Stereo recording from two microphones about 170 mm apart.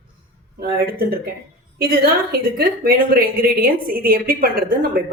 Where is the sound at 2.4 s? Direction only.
55° right (ahead or behind).